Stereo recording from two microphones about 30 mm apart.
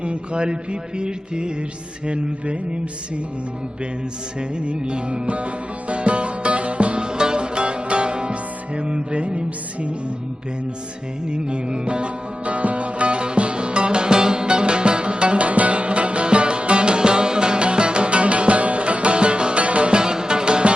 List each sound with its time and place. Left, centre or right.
0.0 s music: right
4.4 s music: right
11.3 s music: right
19.9 s music: right